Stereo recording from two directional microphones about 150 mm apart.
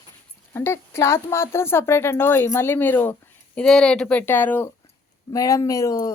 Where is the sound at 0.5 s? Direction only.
15° left (ahead or behind).